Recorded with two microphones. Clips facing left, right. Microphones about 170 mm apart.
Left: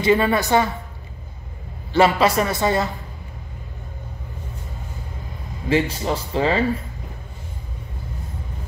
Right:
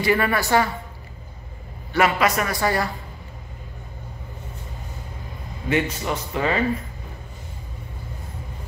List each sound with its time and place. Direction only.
0.0 s a man's voice: 20° left (ahead or behind)
2.0 s a man's voice: 30° left (ahead or behind)
5.7 s speech: 30° left (ahead or behind)